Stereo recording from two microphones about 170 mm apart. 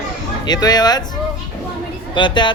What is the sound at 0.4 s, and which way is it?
A woman's voice, 25° left (ahead or behind).